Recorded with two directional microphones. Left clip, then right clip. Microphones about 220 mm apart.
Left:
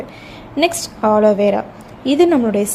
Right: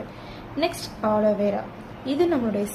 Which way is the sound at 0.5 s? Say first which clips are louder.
Left 9 dB; 35° left (ahead or behind).